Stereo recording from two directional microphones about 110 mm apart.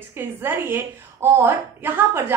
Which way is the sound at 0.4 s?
20° right (ahead or behind).